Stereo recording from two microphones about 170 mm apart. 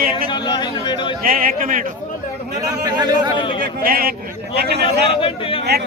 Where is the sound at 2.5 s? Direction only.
25° right (ahead or behind).